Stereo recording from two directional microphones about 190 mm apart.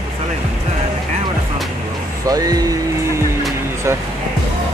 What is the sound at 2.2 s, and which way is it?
Speech, 20° right (ahead or behind).